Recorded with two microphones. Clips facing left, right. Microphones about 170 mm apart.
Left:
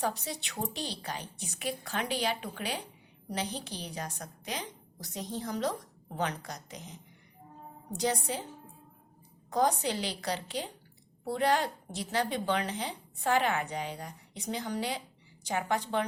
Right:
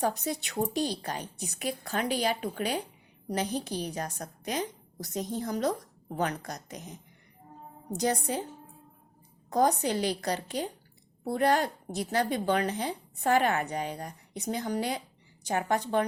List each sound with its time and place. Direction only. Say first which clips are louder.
0.0 s speech: right 4 dB; 45° right (ahead or behind)
9.5 s speech: right 3 dB; 45° right (ahead or behind)